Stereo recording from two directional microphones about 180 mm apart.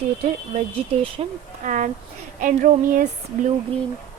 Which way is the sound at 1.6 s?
45° right (ahead or behind).